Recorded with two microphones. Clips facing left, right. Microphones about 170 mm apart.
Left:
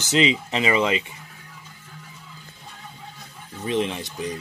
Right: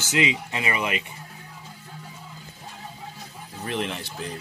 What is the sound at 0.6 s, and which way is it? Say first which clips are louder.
Speech: left 8 dB; 25° left (ahead or behind).